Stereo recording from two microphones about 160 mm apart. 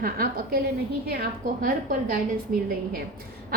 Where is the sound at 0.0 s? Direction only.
65° right (ahead or behind).